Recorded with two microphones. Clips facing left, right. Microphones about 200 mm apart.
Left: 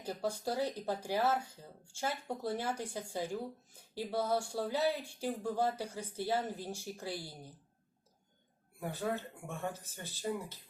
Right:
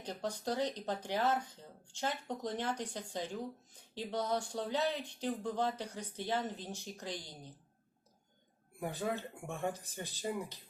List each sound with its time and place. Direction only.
0.0 s speech: 10° left (ahead or behind)
8.8 s speech: 15° right (ahead or behind)